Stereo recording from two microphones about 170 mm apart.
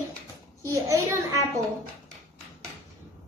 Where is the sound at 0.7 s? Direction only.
20° right (ahead or behind).